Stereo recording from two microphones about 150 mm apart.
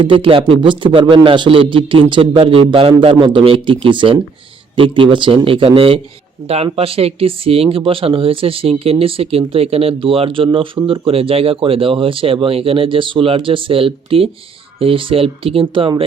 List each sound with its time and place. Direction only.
0.0 s speech: 35° right (ahead or behind)